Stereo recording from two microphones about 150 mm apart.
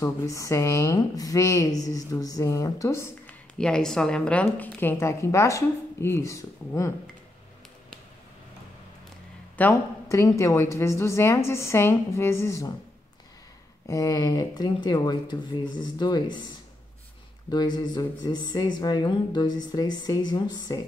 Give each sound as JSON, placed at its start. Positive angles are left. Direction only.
{"t": 0.0, "sound": "speech", "side_deg": 20}
{"t": 3.5, "sound": "a woman's voice", "side_deg": 5}
{"t": 9.6, "sound": "speech", "side_deg": 15}
{"t": 13.8, "sound": "speech", "side_deg": 20}
{"t": 17.5, "sound": "speech", "side_deg": 30}